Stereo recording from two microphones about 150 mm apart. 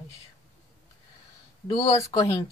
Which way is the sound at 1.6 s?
25° left (ahead or behind).